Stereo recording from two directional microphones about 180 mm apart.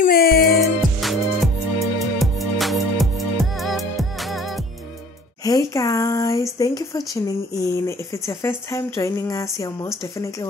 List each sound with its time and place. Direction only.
0.0 s music: 55° left (ahead or behind)
0.6 s music: centre (ahead or behind)
5.4 s speech: 20° left (ahead or behind)